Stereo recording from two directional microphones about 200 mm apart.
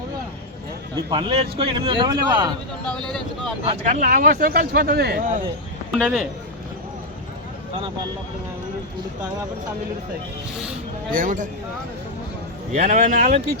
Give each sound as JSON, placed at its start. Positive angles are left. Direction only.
{"t": 1.1, "sound": "a man's voice", "side_deg": -25}
{"t": 2.8, "sound": "speech", "side_deg": 5}
{"t": 3.6, "sound": "speech", "side_deg": -35}
{"t": 5.9, "sound": "speech", "side_deg": 0}
{"t": 11.1, "sound": "a man's voice", "side_deg": -40}
{"t": 12.7, "sound": "a man's voice", "side_deg": -40}